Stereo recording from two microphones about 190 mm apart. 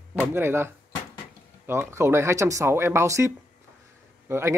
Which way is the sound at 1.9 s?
15° right (ahead or behind).